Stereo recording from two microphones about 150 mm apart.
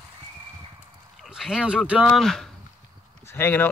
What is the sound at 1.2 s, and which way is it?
Speech, 5° right (ahead or behind).